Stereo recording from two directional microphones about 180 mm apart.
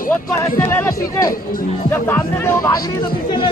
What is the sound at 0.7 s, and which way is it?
Speech, 15° left (ahead or behind).